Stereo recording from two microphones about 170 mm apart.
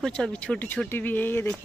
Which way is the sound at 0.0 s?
5° left (ahead or behind).